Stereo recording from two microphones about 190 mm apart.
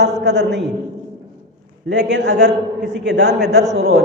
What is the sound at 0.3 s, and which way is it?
Speech, 65° right (ahead or behind).